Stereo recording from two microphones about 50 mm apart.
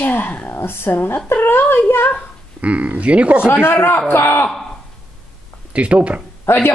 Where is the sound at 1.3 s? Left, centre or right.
Left.